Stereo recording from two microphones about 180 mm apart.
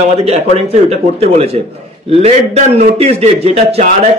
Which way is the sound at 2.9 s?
35° right (ahead or behind).